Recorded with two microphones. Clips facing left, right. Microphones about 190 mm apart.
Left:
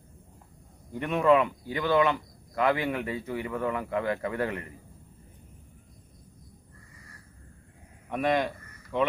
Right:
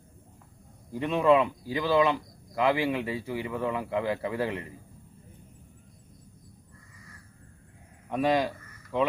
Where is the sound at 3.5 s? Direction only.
20° right (ahead or behind).